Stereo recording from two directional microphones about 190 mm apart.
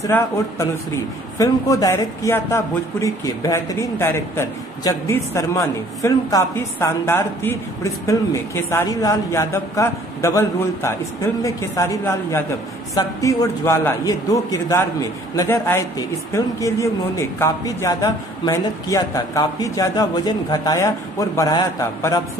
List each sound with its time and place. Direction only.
0.0 s speech: 15° left (ahead or behind)